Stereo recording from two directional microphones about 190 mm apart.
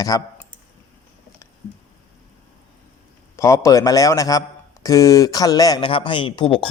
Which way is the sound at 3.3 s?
15° left (ahead or behind).